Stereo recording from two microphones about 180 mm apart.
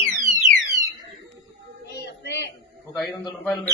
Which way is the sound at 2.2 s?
70° left (ahead or behind).